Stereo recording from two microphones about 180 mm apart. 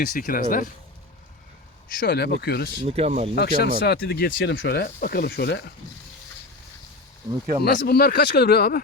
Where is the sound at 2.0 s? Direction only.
60° left (ahead or behind).